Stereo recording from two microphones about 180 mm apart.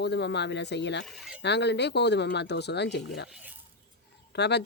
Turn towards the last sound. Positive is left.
turn(degrees=70)  # may be behind; listen again after turning